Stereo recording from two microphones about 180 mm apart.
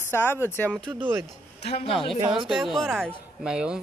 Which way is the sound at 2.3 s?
Centre (ahead or behind).